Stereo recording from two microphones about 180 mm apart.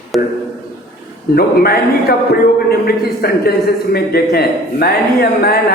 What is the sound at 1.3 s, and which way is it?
A man's voice, 55° left (ahead or behind).